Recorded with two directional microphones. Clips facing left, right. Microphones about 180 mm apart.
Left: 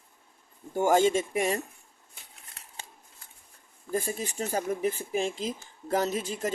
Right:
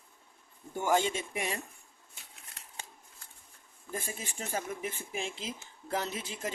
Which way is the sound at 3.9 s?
40° left (ahead or behind).